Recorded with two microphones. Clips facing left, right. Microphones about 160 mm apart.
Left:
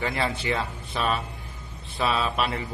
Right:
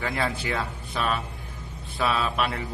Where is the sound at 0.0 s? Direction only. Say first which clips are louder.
Left 1 dB; centre (ahead or behind).